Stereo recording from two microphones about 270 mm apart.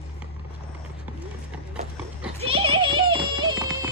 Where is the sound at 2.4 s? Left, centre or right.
Right.